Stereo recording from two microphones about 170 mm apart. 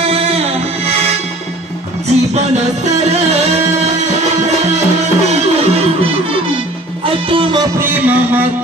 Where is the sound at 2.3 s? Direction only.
40° right (ahead or behind).